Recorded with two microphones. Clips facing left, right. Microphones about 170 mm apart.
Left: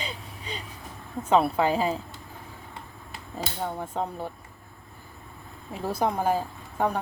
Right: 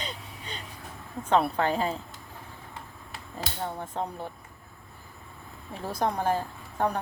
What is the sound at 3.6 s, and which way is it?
Speech, 10° left (ahead or behind).